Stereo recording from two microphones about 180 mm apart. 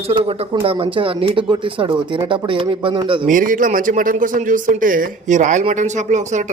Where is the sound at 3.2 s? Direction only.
50° right (ahead or behind).